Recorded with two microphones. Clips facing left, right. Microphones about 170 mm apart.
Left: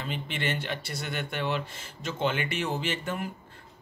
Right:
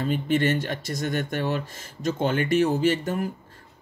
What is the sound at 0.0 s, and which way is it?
Speech, 45° right (ahead or behind).